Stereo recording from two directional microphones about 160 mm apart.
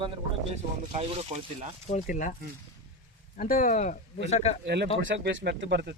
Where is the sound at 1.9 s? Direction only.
55° left (ahead or behind).